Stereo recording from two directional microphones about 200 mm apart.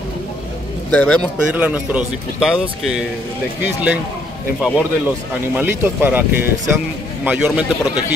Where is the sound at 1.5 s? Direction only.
5° right (ahead or behind).